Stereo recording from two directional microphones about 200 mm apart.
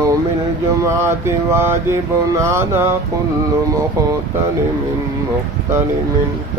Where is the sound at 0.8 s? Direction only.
15° right (ahead or behind).